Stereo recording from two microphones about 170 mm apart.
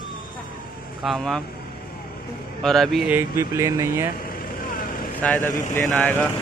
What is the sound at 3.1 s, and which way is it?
Speech, 15° right (ahead or behind).